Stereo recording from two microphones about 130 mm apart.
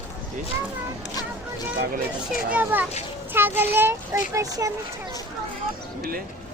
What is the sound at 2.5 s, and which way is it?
A child's voice, 10° right (ahead or behind).